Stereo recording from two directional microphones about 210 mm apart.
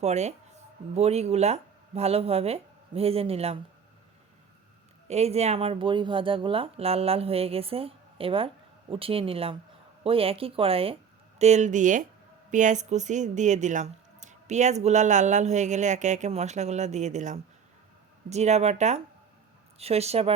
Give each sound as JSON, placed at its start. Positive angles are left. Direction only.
{"t": 0.0, "sound": "speech", "side_deg": -30}
{"t": 5.0, "sound": "speech", "side_deg": -30}